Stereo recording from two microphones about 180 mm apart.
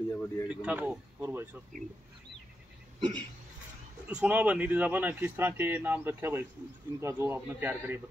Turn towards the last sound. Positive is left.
turn(degrees=-10)  # may be behind; listen again after turning